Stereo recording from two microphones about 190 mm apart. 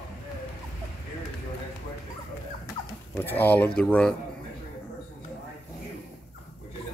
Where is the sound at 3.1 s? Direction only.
10° left (ahead or behind).